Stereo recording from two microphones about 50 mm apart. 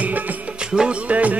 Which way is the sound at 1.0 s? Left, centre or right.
Right.